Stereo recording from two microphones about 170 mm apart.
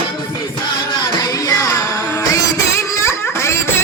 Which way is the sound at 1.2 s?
20° left (ahead or behind).